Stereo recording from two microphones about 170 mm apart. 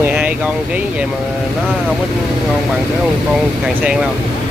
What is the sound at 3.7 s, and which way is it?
Speech, 5° right (ahead or behind).